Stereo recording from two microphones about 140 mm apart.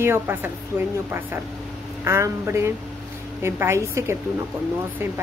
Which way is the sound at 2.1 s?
20° right (ahead or behind).